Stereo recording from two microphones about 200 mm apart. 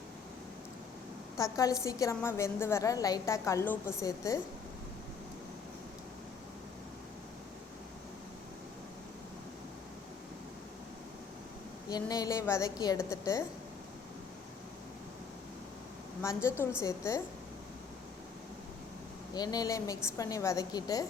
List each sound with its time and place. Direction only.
1.4 s a woman's voice: 15° left (ahead or behind)
11.9 s a woman's voice: 20° left (ahead or behind)
16.2 s a woman's voice: 15° left (ahead or behind)
19.3 s a woman's voice: 20° left (ahead or behind)